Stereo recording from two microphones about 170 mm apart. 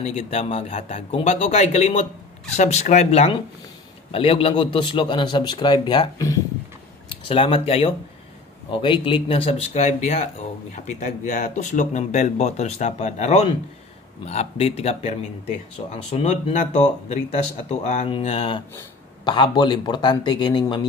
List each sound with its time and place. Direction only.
0.0 s a man's voice: 40° left (ahead or behind)